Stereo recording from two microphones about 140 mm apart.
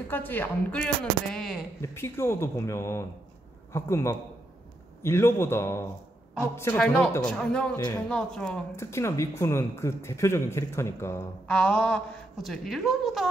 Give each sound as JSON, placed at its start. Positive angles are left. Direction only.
{"t": 0.1, "sound": "a man's voice", "side_deg": 15}
{"t": 1.8, "sound": "a man's voice", "side_deg": 15}
{"t": 6.8, "sound": "a man's voice", "side_deg": 5}
{"t": 8.7, "sound": "speech", "side_deg": 20}
{"t": 11.4, "sound": "a woman's voice", "side_deg": 10}